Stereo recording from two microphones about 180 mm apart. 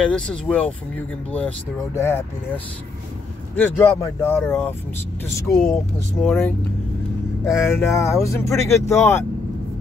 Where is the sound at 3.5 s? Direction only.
10° left (ahead or behind).